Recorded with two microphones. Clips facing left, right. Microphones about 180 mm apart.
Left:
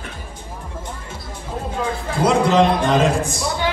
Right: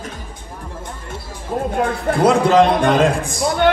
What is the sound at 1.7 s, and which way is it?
A man's voice, 60° right (ahead or behind).